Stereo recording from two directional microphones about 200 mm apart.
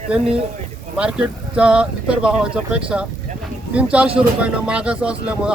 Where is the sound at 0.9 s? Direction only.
5° right (ahead or behind).